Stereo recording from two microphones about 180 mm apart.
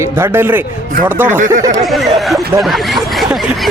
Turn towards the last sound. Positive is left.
turn(degrees=0)  # may be behind; listen again after turning